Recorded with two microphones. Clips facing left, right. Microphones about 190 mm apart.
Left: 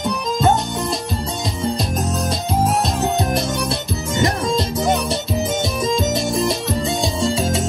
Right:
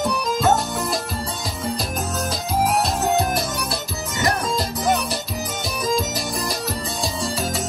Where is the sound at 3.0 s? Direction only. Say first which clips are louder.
Left 1 dB; 5° right (ahead or behind).